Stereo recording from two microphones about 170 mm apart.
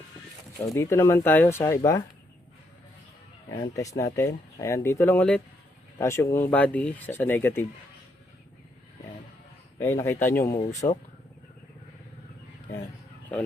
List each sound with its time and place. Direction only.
0.6 s speech: 15° left (ahead or behind)
3.5 s speech: 25° left (ahead or behind)
9.7 s speech: 15° left (ahead or behind)